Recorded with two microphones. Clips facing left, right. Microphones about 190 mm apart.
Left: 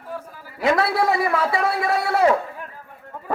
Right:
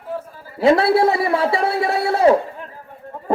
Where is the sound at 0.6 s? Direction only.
30° right (ahead or behind).